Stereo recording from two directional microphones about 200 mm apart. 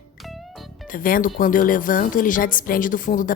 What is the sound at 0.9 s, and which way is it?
Speech, 45° left (ahead or behind).